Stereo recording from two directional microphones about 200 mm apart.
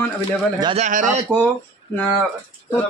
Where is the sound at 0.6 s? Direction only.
30° right (ahead or behind).